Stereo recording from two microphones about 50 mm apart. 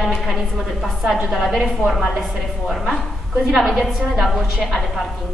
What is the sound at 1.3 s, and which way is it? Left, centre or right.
Speech, centre.